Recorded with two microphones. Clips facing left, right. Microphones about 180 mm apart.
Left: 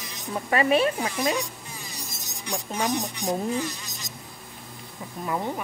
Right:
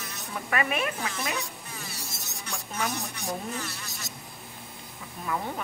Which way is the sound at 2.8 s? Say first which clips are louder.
Left 6 dB; 15° left (ahead or behind).